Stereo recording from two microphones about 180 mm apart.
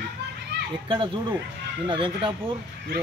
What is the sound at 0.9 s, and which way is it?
Speech, 30° right (ahead or behind).